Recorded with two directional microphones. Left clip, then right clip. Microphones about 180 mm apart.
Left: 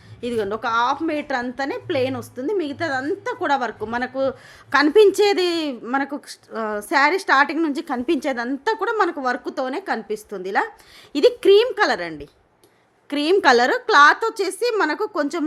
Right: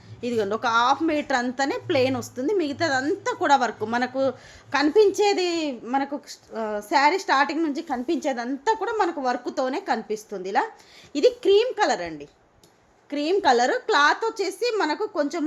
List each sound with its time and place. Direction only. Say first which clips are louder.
0.2 s a woman's voice: left 1 dB; 10° left (ahead or behind)
4.7 s a woman's voice: left 5 dB; 25° left (ahead or behind)
11.1 s a woman's voice: left 4 dB; 25° left (ahead or behind)